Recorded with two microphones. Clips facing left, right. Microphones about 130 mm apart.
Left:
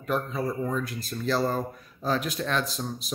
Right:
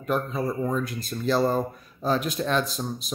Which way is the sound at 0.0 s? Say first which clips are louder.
Right 2 dB; 15° right (ahead or behind).